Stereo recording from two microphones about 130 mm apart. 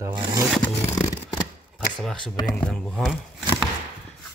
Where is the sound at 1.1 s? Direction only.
30° left (ahead or behind).